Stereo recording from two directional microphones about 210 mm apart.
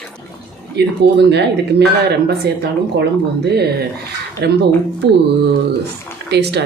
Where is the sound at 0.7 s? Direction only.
55° right (ahead or behind).